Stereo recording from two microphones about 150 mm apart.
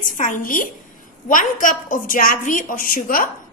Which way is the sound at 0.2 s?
60° left (ahead or behind).